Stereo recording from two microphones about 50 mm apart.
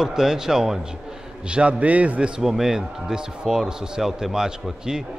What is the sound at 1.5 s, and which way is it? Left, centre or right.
Speech, right.